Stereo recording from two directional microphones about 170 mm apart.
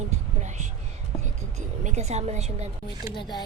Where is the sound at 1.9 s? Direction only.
40° right (ahead or behind).